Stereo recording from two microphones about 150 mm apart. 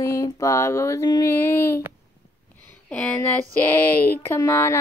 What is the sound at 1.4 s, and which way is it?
Speech, 15° left (ahead or behind).